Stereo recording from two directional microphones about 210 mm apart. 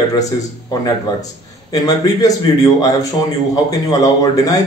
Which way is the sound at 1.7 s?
15° left (ahead or behind).